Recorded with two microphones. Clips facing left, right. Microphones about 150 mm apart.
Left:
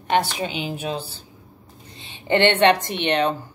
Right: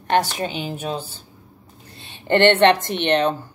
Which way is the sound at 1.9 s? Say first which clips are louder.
Right 2 dB; 15° left (ahead or behind).